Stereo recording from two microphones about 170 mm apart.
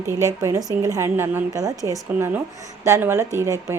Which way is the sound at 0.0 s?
15° right (ahead or behind).